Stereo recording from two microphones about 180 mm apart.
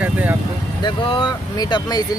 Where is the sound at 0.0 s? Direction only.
10° right (ahead or behind).